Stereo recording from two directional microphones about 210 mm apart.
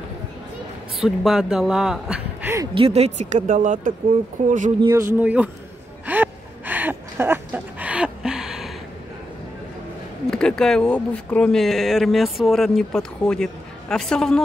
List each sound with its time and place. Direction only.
0.9 s speech: centre (ahead or behind)
2.7 s speech: 30° right (ahead or behind)
4.9 s speech: 10° right (ahead or behind)
6.0 s gasp: 10° right (ahead or behind)
10.3 s speech: 5° left (ahead or behind)